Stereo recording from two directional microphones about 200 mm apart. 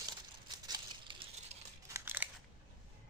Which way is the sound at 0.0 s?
20° right (ahead or behind).